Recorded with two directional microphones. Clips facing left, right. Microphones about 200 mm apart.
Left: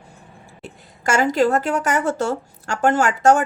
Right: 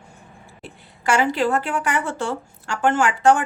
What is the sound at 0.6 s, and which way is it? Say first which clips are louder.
A woman's voice: even; 45° left (ahead or behind).